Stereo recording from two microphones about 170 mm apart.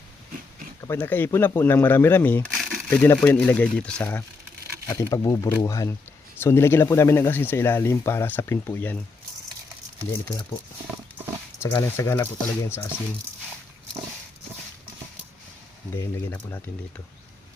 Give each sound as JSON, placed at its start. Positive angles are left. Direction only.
{"t": 0.8, "sound": "speech", "side_deg": 15}
{"t": 11.6, "sound": "speech", "side_deg": 15}
{"t": 16.3, "sound": "speech", "side_deg": 10}